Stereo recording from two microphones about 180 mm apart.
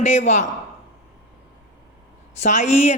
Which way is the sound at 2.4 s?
40° left (ahead or behind).